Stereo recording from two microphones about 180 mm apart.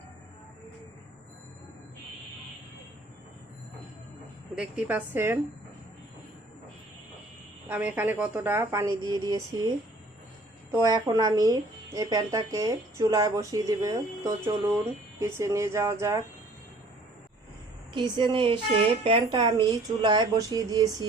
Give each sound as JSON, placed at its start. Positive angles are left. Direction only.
{"t": 4.5, "sound": "a woman's voice", "side_deg": -5}
{"t": 7.7, "sound": "a woman's voice", "side_deg": -10}
{"t": 17.9, "sound": "speech", "side_deg": -25}